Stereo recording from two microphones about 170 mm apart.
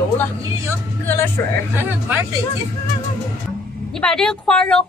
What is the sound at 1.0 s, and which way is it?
Speech, 15° left (ahead or behind).